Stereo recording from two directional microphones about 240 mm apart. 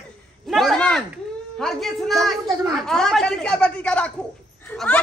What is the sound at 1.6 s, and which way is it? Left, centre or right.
A child's voice, centre.